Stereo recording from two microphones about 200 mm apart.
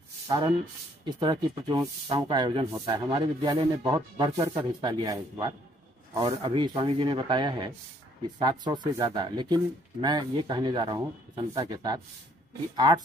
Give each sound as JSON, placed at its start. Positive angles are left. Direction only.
{"t": 0.3, "sound": "speech", "side_deg": -25}